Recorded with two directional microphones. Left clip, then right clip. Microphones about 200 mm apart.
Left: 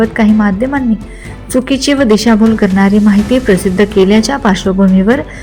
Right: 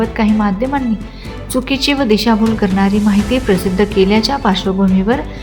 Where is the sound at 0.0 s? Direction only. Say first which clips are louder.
Left 4 dB; 15° left (ahead or behind).